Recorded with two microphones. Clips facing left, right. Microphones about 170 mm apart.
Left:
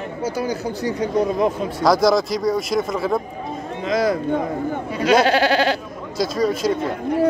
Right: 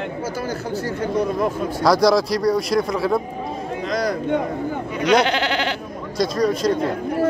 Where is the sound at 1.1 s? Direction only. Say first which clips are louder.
Left 2 dB; centre (ahead or behind).